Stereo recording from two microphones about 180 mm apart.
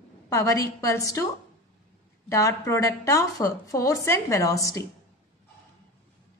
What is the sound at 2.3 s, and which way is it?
A woman's voice, 15° left (ahead or behind).